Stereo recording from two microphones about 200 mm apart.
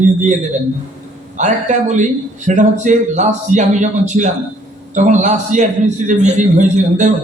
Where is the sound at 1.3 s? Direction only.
35° right (ahead or behind).